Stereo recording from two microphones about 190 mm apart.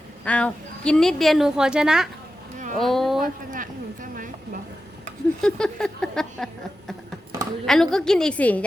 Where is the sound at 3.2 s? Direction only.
45° right (ahead or behind).